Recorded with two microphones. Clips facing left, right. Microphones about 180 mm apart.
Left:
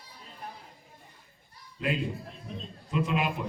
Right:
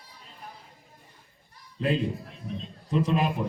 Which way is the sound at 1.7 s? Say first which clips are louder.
Right 4 dB; 30° right (ahead or behind).